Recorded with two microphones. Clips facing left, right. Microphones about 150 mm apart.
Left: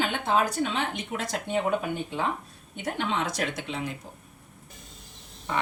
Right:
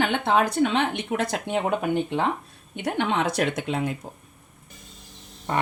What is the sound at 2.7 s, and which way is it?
A woman's voice, 65° right (ahead or behind).